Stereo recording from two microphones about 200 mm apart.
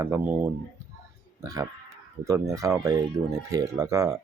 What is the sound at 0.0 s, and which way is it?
Speech, 10° right (ahead or behind).